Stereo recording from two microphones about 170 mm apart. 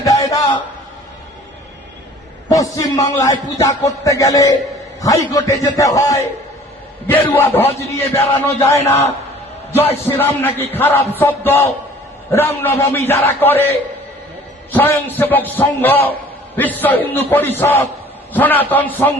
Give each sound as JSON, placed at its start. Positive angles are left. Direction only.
{"t": 0.0, "sound": "a sound", "side_deg": 20}
{"t": 2.5, "sound": "a man's voice", "side_deg": 20}
{"t": 10.1, "sound": "speech", "side_deg": 10}